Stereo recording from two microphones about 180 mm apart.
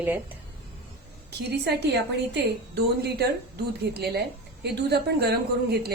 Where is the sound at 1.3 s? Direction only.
65° right (ahead or behind).